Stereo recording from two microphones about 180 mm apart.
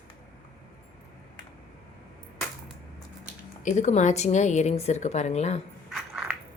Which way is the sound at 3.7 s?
40° left (ahead or behind).